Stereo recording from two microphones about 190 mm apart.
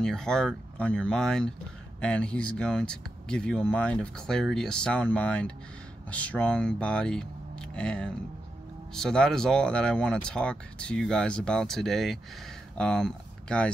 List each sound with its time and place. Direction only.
0.0 s speech: 5° left (ahead or behind)